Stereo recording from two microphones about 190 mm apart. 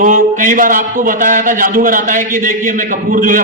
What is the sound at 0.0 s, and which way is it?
A man's voice, 45° right (ahead or behind).